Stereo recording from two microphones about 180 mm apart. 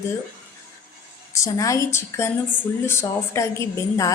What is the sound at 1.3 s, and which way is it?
A woman's voice, 15° left (ahead or behind).